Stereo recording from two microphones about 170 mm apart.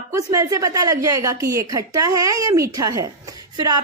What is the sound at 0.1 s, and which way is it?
A woman's voice, 20° right (ahead or behind).